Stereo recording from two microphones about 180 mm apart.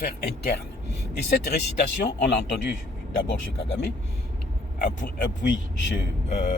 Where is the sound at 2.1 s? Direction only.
70° left (ahead or behind).